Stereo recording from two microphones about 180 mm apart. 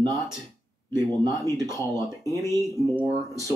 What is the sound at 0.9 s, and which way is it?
Speech, 20° right (ahead or behind).